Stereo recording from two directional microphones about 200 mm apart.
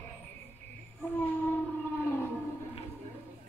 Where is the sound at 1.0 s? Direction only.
10° left (ahead or behind).